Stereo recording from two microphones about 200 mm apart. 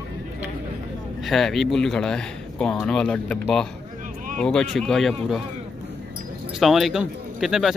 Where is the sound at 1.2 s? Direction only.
Centre (ahead or behind).